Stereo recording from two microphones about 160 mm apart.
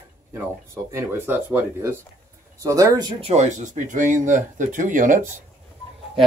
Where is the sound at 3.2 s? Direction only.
45° right (ahead or behind).